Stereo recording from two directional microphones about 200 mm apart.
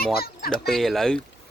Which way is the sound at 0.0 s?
50° left (ahead or behind).